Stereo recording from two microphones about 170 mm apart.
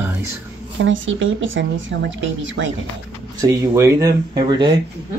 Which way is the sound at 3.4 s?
20° right (ahead or behind).